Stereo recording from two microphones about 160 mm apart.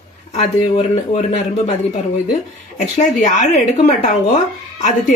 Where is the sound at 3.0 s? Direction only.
50° left (ahead or behind).